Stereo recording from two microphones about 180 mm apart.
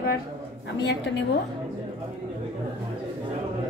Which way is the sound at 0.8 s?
75° left (ahead or behind).